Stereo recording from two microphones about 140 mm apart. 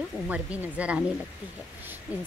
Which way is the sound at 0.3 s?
10° right (ahead or behind).